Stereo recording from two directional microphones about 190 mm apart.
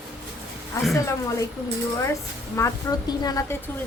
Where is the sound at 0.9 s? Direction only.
15° left (ahead or behind).